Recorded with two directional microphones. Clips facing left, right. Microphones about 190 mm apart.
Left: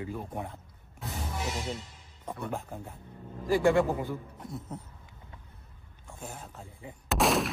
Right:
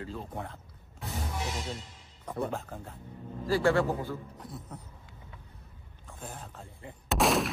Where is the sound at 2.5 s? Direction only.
15° left (ahead or behind).